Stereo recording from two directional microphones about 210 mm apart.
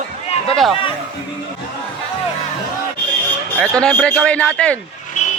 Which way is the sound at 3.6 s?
5° left (ahead or behind).